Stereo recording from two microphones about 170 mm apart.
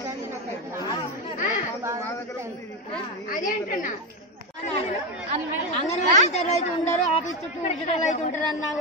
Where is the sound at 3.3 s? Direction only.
55° left (ahead or behind).